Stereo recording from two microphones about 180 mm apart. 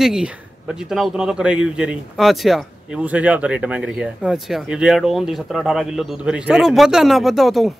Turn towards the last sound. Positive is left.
turn(degrees=0)  # may be behind; listen again after turning